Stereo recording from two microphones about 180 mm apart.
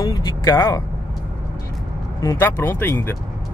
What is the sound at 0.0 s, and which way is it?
Vehicle, 20° left (ahead or behind).